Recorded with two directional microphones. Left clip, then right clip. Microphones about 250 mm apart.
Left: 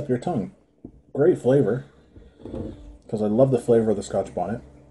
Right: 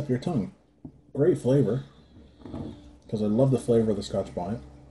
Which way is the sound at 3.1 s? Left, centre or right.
Centre.